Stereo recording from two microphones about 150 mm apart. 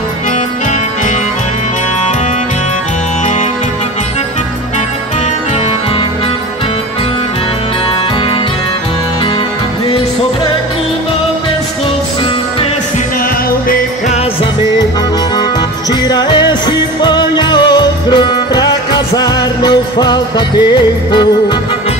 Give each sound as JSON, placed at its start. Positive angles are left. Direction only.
{"t": 15.9, "sound": "music", "side_deg": 30}